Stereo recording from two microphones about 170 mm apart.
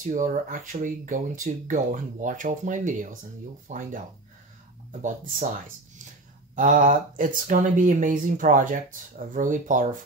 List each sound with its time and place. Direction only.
0.0 s speech: 50° right (ahead or behind)
5.0 s speech: 50° right (ahead or behind)
6.5 s speech: 50° right (ahead or behind)